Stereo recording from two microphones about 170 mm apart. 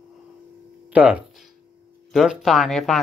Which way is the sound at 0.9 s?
5° right (ahead or behind).